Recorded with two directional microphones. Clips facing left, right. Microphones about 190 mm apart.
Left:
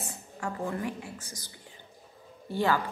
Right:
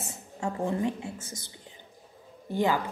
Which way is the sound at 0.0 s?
25° right (ahead or behind).